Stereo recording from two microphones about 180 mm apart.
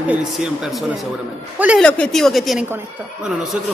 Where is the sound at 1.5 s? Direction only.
5° right (ahead or behind).